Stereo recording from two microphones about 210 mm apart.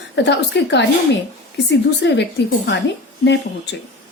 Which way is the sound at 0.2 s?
55° left (ahead or behind).